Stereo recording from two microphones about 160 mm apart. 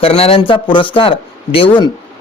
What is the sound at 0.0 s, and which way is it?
A man's voice, 40° left (ahead or behind).